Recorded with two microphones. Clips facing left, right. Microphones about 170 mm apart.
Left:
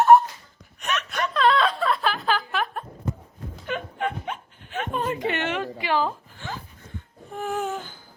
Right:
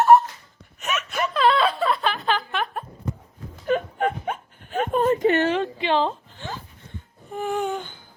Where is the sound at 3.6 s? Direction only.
40° right (ahead or behind); by 6.5 s 25° right (ahead or behind).